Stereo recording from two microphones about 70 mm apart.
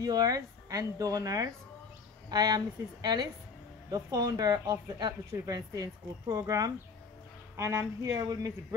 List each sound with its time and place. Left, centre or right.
0.0 s speech: right
2.2 s a woman's voice: right
3.9 s speech: right